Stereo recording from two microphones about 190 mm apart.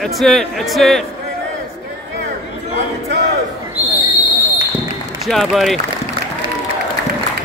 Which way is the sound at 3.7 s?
10° right (ahead or behind).